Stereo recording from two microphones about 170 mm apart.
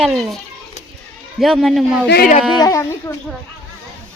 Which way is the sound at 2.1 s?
60° left (ahead or behind).